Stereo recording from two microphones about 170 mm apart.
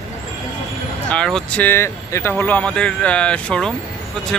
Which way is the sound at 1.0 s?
5° left (ahead or behind).